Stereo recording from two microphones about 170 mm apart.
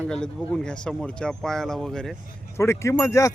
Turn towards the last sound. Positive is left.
turn(degrees=20)  # may be behind; listen again after turning